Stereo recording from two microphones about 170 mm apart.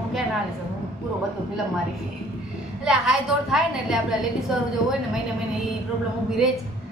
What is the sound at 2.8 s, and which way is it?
A woman's voice, 5° right (ahead or behind).